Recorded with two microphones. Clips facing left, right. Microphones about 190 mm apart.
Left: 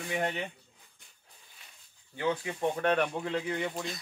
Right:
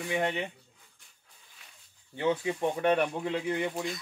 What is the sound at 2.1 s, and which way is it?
Speech, 20° right (ahead or behind).